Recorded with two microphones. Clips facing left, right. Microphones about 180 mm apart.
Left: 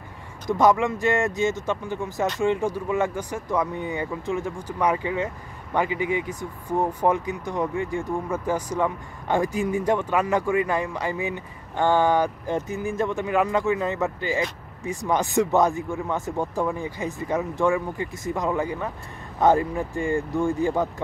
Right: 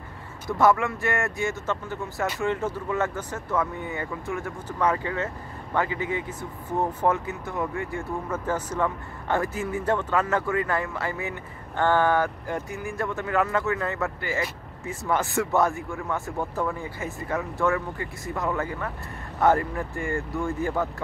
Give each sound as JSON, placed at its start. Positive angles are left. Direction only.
{"t": 0.5, "sound": "speech", "side_deg": 15}